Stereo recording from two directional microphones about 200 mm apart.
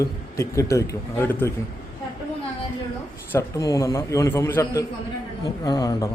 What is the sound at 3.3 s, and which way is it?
Speech, 15° left (ahead or behind).